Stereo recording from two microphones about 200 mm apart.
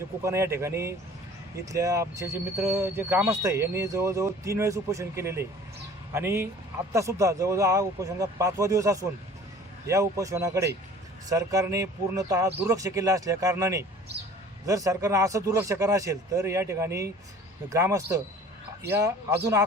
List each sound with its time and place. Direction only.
0.2 s speech: 15° right (ahead or behind)